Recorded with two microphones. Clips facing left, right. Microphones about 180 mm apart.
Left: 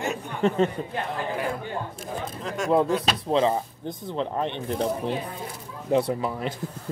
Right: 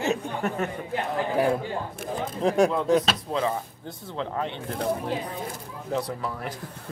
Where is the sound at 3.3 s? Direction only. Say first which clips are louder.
Left 7 dB; 20° left (ahead or behind).